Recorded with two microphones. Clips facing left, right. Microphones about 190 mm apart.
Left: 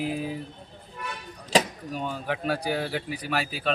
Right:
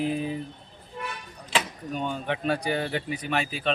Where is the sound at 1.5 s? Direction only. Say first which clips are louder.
Left 6 dB; 40° left (ahead or behind).